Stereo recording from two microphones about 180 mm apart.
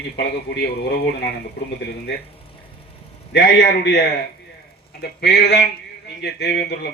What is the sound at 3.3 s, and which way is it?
Speech, 65° left (ahead or behind).